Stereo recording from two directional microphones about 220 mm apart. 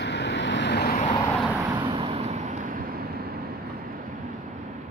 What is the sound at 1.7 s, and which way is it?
Vehicle, 20° right (ahead or behind).